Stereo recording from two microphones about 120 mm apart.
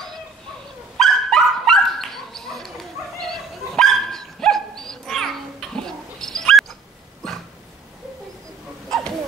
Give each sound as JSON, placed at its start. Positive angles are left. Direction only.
{"t": 0.9, "sound": "dog", "side_deg": 5}